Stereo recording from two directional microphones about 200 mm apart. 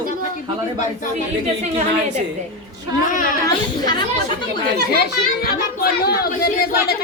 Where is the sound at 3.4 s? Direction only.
20° left (ahead or behind).